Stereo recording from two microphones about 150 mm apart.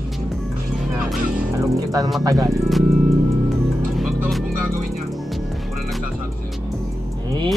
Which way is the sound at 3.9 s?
Centre (ahead or behind).